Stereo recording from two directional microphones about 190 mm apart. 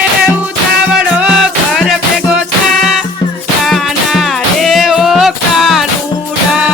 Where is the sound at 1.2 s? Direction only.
5° right (ahead or behind).